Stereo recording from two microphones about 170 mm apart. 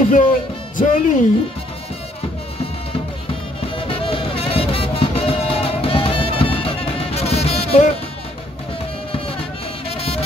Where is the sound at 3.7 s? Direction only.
30° left (ahead or behind).